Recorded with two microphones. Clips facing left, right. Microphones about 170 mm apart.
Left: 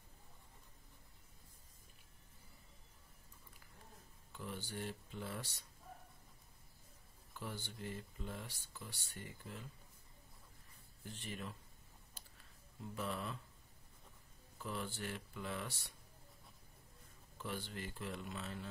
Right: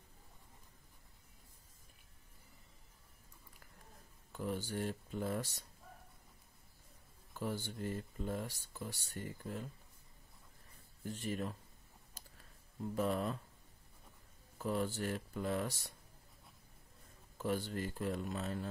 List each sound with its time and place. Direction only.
4.3 s speech: 45° right (ahead or behind)
7.3 s speech: 45° right (ahead or behind)
11.1 s speech: 40° right (ahead or behind)
12.9 s speech: 45° right (ahead or behind)
14.6 s speech: 45° right (ahead or behind)
17.4 s speech: 45° right (ahead or behind)